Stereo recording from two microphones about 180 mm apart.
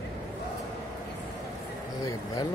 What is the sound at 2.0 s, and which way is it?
Speech, 20° left (ahead or behind).